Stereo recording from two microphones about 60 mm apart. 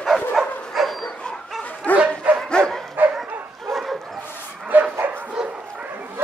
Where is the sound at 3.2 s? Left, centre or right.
Centre.